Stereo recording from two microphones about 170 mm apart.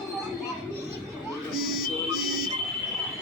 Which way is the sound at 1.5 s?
5° right (ahead or behind).